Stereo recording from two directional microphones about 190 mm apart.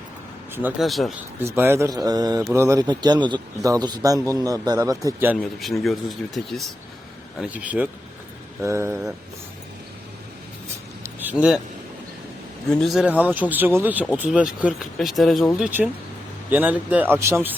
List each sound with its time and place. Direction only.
0.5 s speech: 5° right (ahead or behind)
1.4 s a man's voice: 10° right (ahead or behind)
5.5 s speech: centre (ahead or behind)
11.0 s a sound: 10° right (ahead or behind)
12.7 s speech: centre (ahead or behind)